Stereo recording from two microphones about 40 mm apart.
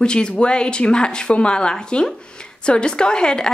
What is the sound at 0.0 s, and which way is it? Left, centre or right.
A woman's voice, left.